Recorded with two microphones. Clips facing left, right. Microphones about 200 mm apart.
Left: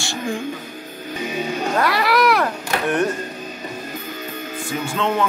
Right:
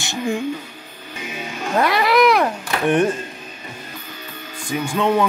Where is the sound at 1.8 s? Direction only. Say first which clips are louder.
Right 4 dB; 20° right (ahead or behind).